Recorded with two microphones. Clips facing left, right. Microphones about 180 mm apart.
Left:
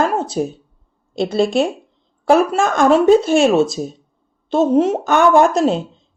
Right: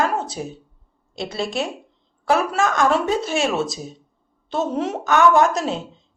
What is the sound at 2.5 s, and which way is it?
Speech, 25° left (ahead or behind).